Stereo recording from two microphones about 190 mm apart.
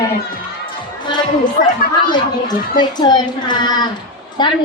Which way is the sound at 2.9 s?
20° left (ahead or behind).